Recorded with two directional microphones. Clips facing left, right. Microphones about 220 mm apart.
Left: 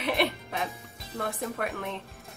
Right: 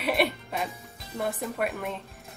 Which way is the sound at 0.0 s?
Centre (ahead or behind).